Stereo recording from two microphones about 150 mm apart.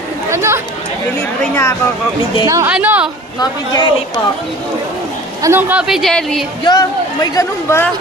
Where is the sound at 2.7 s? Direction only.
10° right (ahead or behind).